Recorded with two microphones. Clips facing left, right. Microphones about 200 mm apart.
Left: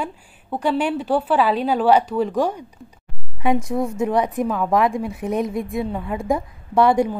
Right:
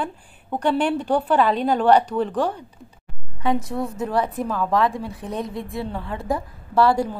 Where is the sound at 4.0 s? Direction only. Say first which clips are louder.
Left 3 dB; 15° left (ahead or behind).